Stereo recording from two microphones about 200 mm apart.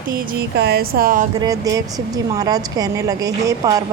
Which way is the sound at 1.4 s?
15° right (ahead or behind).